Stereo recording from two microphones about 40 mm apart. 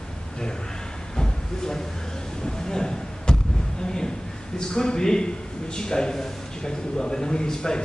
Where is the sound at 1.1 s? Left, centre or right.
Centre.